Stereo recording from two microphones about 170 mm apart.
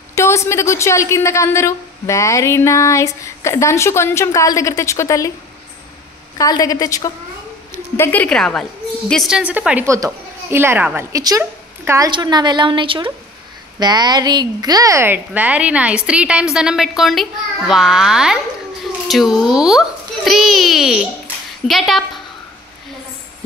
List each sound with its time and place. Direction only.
0.1 s a woman's voice: 15° left (ahead or behind)
6.3 s a woman's voice: 20° left (ahead or behind)
8.0 s a woman's voice: 10° left (ahead or behind)
9.1 s a woman's voice: 5° right (ahead or behind)